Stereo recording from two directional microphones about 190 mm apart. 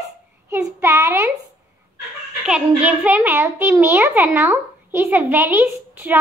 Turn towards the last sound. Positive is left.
turn(degrees=-10)  # may be behind; listen again after turning